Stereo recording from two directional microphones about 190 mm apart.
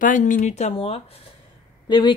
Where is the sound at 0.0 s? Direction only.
45° left (ahead or behind).